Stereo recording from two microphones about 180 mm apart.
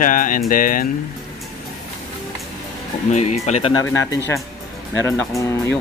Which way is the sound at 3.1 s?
40° left (ahead or behind).